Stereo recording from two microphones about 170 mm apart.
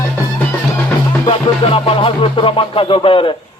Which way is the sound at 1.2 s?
35° left (ahead or behind).